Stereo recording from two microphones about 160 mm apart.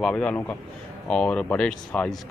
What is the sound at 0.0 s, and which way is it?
A man's voice, 5° left (ahead or behind).